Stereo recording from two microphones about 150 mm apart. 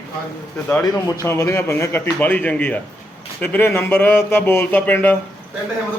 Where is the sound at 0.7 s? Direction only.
10° left (ahead or behind).